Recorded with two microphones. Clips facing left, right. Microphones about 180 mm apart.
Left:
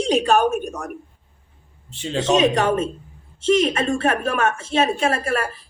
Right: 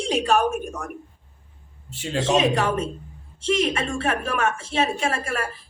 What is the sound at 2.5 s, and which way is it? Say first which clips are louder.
A woman's voice: left 3 dB; 40° left (ahead or behind).